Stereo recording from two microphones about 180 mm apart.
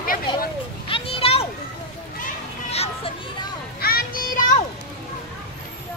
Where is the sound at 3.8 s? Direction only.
55° left (ahead or behind).